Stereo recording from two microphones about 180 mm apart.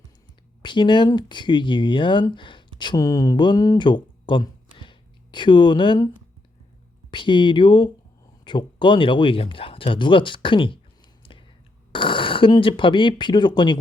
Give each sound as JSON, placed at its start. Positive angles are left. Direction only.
{"t": 0.6, "sound": "speech", "side_deg": 25}
{"t": 7.1, "sound": "speech", "side_deg": 25}
{"t": 11.2, "sound": "whispering", "side_deg": 30}
{"t": 11.9, "sound": "speech", "side_deg": 30}